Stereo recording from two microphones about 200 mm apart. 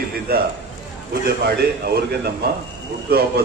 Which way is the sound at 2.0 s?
55° right (ahead or behind).